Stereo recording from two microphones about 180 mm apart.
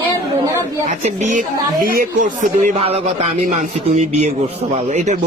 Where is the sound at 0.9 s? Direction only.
40° right (ahead or behind).